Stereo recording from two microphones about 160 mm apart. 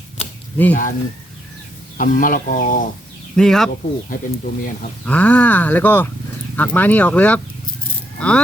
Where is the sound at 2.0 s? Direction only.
55° left (ahead or behind).